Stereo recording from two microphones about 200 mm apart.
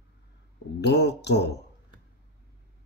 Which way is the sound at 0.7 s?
60° left (ahead or behind).